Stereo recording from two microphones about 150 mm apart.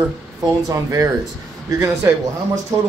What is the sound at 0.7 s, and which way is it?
A man's voice, 20° right (ahead or behind).